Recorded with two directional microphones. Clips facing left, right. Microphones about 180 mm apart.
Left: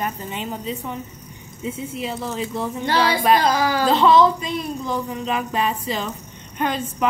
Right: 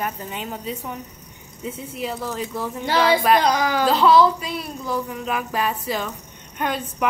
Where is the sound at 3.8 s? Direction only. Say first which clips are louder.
Even; 5° right (ahead or behind).